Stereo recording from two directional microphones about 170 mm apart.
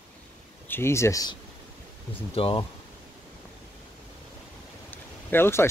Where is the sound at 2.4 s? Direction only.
35° left (ahead or behind).